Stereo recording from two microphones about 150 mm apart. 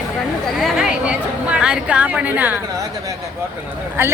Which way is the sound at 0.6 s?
Centre (ahead or behind).